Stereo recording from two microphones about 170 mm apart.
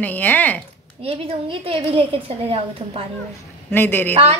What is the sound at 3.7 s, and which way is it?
Speech, 10° left (ahead or behind).